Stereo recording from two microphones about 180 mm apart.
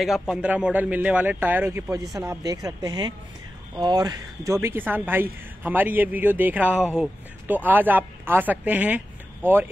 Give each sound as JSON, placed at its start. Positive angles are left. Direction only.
{"t": 0.0, "sound": "speech", "side_deg": 0}